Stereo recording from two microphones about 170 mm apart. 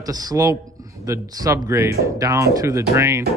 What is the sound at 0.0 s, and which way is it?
Speech, 20° right (ahead or behind).